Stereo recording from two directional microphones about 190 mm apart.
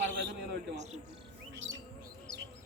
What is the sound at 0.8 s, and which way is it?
Speech, 35° right (ahead or behind).